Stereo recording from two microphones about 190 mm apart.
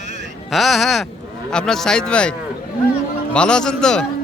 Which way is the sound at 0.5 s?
Centre (ahead or behind).